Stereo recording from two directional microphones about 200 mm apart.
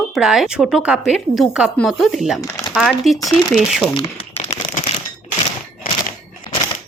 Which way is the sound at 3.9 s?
25° left (ahead or behind).